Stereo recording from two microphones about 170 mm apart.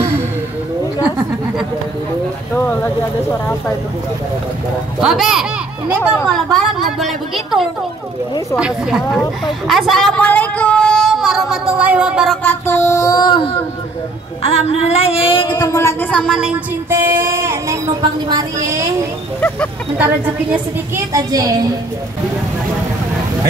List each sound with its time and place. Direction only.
1.0 s chatter: 5° right (ahead or behind)
2.5 s a sound: 10° left (ahead or behind)
5.0 s a woman's voice: centre (ahead or behind)
12.4 s child singing: 15° left (ahead or behind); by 13.6 s 30° left (ahead or behind)
14.4 s speech: 35° left (ahead or behind); by 16.1 s 15° left (ahead or behind)
16.1 s a woman's voice: 5° left (ahead or behind)
16.9 s music: 15° right (ahead or behind)
18.3 s speech: 20° right (ahead or behind)
20.9 s speech: 20° right (ahead or behind)